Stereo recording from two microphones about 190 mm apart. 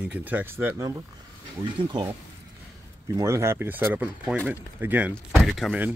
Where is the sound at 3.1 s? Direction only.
15° right (ahead or behind).